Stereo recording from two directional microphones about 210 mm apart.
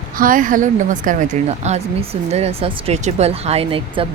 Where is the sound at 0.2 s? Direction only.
40° right (ahead or behind).